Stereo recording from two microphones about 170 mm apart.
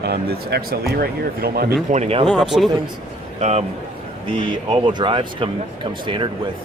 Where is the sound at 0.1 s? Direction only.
70° right (ahead or behind).